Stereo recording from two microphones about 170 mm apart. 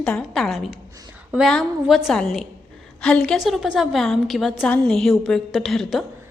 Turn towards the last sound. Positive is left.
turn(degrees=0)  # may be behind; listen again after turning